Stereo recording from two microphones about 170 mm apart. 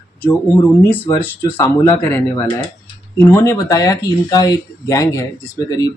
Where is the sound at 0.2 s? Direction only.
10° left (ahead or behind).